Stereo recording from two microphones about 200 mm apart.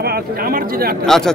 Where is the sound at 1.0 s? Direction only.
Centre (ahead or behind).